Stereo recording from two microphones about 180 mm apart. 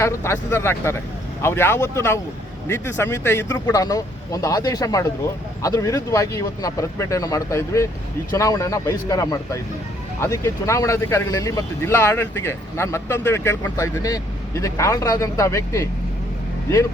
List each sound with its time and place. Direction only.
0.0 s speech: 15° left (ahead or behind)